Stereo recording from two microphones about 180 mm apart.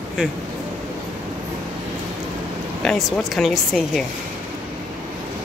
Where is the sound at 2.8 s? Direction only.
Centre (ahead or behind).